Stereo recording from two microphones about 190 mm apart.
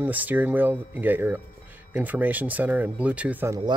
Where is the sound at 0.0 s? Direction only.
10° right (ahead or behind).